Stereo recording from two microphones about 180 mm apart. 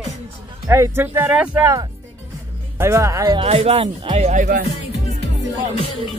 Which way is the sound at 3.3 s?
35° right (ahead or behind).